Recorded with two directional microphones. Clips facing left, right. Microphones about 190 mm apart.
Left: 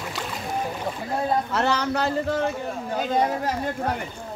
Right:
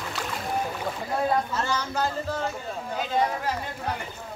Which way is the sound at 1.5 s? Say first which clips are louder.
Left 5 dB; 70° left (ahead or behind).